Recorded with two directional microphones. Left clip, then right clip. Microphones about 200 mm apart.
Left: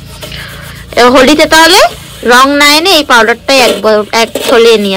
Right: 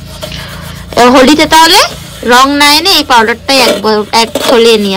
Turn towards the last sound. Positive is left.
turn(degrees=-10)  # may be behind; listen again after turning